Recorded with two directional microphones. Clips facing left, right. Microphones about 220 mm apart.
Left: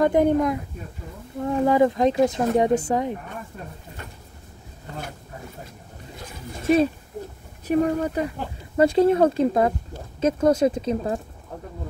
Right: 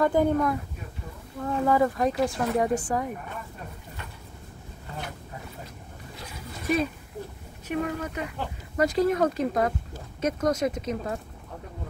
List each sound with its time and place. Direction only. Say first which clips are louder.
0.0 s speech: left 4 dB; 20° left (ahead or behind)
6.6 s speech: left 7 dB; 30° left (ahead or behind)